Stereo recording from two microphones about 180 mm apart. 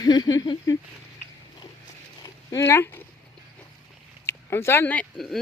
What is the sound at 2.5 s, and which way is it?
Speech, 15° left (ahead or behind).